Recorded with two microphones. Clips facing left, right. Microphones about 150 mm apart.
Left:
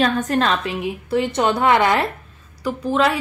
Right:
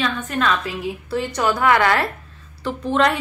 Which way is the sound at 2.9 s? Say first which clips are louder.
Even; 5° left (ahead or behind).